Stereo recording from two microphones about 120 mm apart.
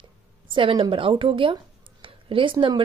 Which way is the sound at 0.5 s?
45° right (ahead or behind).